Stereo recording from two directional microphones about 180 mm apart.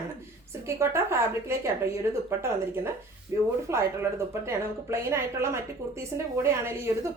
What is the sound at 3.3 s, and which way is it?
Speech, 15° right (ahead or behind).